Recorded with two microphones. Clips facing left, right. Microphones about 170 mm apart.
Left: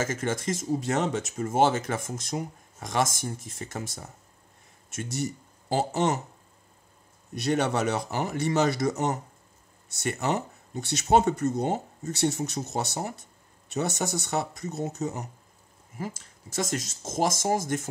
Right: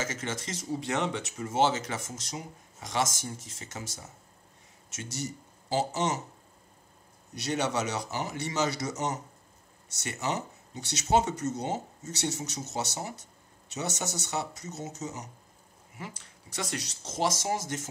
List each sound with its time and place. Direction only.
0.0 s speech: 50° left (ahead or behind)
7.3 s speech: 55° left (ahead or behind)
16.0 s speech: 45° left (ahead or behind)